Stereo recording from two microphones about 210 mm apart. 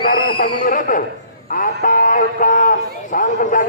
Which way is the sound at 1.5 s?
35° left (ahead or behind).